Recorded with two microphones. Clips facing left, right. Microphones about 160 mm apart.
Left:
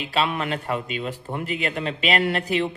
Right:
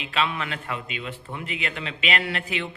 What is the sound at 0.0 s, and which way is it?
A man's voice, 40° left (ahead or behind).